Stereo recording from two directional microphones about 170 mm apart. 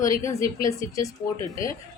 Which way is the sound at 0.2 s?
20° left (ahead or behind).